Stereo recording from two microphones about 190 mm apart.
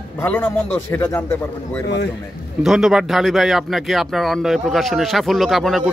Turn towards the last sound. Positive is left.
turn(degrees=0)  # may be behind; listen again after turning